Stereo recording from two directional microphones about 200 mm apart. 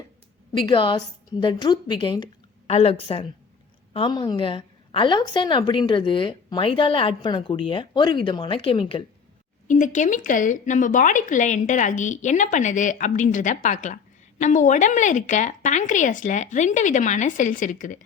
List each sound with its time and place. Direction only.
0.5 s a woman's voice: 25° left (ahead or behind)
9.6 s speech: 40° left (ahead or behind)